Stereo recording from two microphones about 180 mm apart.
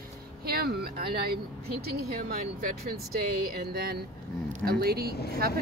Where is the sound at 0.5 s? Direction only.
60° right (ahead or behind).